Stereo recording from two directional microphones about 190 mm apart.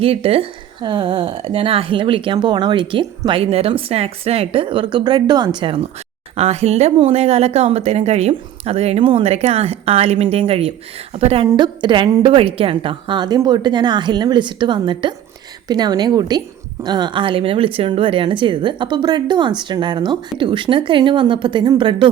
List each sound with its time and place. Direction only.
0.0 s speech: 30° right (ahead or behind)